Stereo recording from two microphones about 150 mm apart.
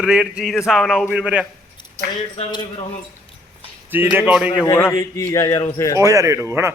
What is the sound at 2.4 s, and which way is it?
Speech, 30° left (ahead or behind).